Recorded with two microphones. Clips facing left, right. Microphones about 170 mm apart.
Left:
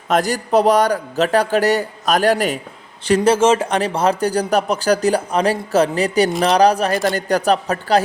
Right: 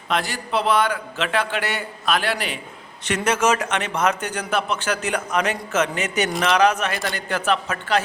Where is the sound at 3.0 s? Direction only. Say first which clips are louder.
Left 7 dB; 30° left (ahead or behind).